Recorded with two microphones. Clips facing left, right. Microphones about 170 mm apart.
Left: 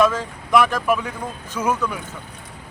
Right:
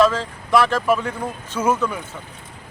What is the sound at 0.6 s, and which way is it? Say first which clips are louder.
Speech: right 1 dB; 15° left (ahead or behind).